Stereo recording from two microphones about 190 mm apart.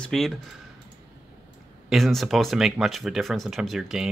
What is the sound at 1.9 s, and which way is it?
Speech, centre (ahead or behind).